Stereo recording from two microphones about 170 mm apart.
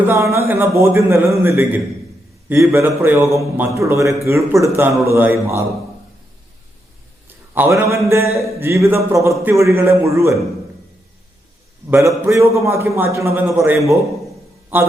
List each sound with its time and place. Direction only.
0.1 s a man's voice: 15° right (ahead or behind)
7.5 s a man's voice: 15° right (ahead or behind)
11.9 s a man's voice: 15° right (ahead or behind)